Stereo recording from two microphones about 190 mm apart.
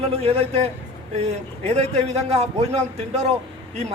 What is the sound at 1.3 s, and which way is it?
A man's voice, 35° right (ahead or behind).